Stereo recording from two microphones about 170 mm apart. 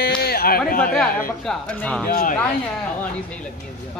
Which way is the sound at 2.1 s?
50° left (ahead or behind).